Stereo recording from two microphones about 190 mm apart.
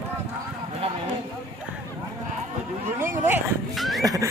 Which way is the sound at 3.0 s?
15° right (ahead or behind).